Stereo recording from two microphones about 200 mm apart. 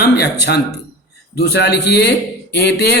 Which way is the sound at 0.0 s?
55° left (ahead or behind).